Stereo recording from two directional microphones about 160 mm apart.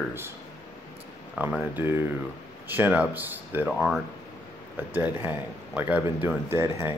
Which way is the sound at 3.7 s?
Centre (ahead or behind).